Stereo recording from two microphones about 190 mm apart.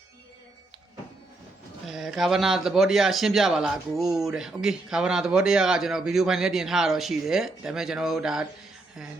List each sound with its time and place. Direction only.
1.9 s a man's voice: centre (ahead or behind)